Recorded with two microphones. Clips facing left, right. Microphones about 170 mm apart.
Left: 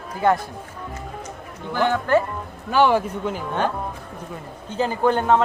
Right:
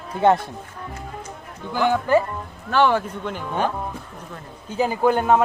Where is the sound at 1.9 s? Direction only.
10° right (ahead or behind).